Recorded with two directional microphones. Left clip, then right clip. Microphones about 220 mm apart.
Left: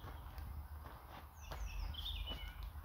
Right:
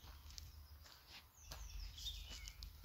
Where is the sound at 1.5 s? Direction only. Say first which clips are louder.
Left 6 dB; 15° right (ahead or behind).